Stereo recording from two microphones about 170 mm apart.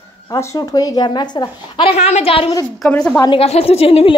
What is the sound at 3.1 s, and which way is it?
A woman's voice, 30° left (ahead or behind).